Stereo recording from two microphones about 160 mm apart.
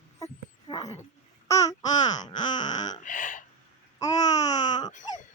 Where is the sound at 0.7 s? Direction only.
25° left (ahead or behind).